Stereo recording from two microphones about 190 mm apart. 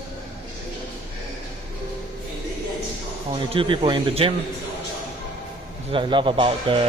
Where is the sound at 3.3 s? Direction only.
30° right (ahead or behind).